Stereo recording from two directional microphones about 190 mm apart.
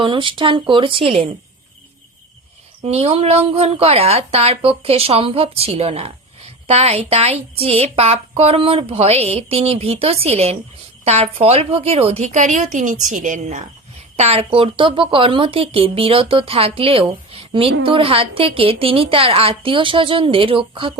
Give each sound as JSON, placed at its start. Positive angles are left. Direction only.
{"t": 0.0, "sound": "speech", "side_deg": -25}
{"t": 2.8, "sound": "speech", "side_deg": -30}